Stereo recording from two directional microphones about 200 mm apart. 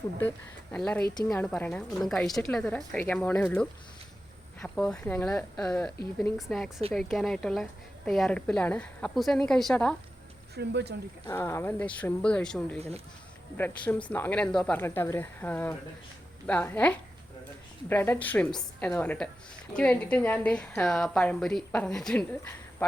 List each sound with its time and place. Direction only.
0.2 s a woman's voice: 10° left (ahead or behind)
10.5 s speech: 55° right (ahead or behind)
11.3 s a woman's voice: 10° left (ahead or behind)